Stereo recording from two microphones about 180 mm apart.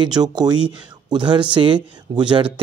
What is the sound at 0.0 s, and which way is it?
Speech, 25° right (ahead or behind).